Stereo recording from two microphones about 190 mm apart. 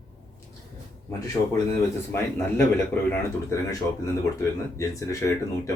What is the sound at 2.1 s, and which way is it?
Speech, 10° left (ahead or behind).